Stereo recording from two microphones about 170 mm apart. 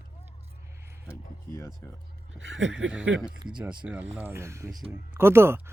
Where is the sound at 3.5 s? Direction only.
5° right (ahead or behind).